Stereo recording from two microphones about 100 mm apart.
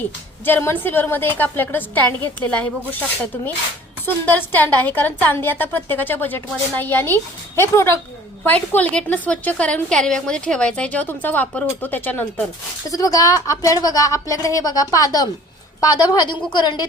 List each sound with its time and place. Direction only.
0.4 s a woman's voice: 20° left (ahead or behind)
4.0 s a woman's voice: 20° left (ahead or behind)
12.9 s a woman's voice: 35° left (ahead or behind)